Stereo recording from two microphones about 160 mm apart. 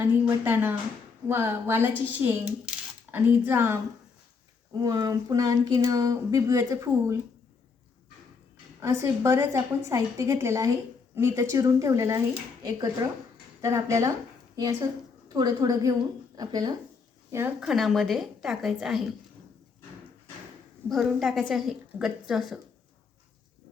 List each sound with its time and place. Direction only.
0.0 s speech: 15° right (ahead or behind)
4.7 s speech: 25° right (ahead or behind)
8.8 s a woman's voice: 20° right (ahead or behind)
17.6 s a woman's voice: centre (ahead or behind)
20.9 s a woman's voice: centre (ahead or behind)